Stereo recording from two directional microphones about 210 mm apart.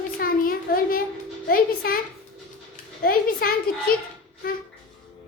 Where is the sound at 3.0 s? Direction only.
45° left (ahead or behind).